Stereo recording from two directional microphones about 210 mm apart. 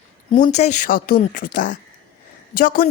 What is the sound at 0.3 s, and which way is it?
A woman's voice, 30° left (ahead or behind).